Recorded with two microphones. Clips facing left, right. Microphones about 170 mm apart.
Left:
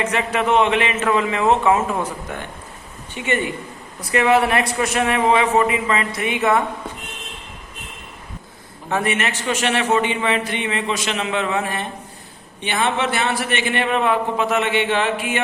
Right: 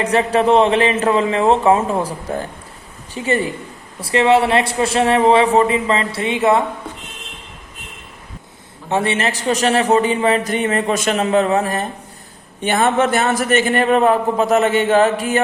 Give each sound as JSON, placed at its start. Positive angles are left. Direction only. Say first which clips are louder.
{"t": 0.0, "sound": "a man's voice", "louder": "right 6 dB", "side_deg": -35}
{"t": 8.9, "sound": "a man's voice", "louder": "right 3 dB", "side_deg": -30}